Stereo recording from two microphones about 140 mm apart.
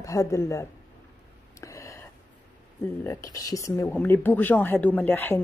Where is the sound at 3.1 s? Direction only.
25° left (ahead or behind).